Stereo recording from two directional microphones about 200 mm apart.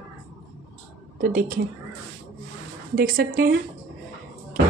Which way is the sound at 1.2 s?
45° right (ahead or behind).